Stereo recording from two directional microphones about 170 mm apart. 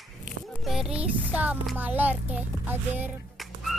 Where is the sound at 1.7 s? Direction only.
10° right (ahead or behind).